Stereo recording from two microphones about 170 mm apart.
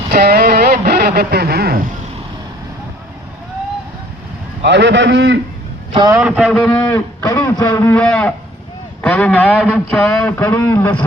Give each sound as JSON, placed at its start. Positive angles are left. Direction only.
{"t": 0.1, "sound": "speech", "side_deg": -70}
{"t": 4.6, "sound": "a man's voice", "side_deg": -90}
{"t": 5.9, "sound": "a man's voice", "side_deg": -25}
{"t": 6.1, "sound": "speech", "side_deg": -5}
{"t": 6.8, "sound": "speech", "side_deg": 20}